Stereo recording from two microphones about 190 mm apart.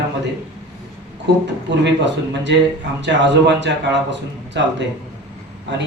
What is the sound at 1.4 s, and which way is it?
Speech, 65° right (ahead or behind).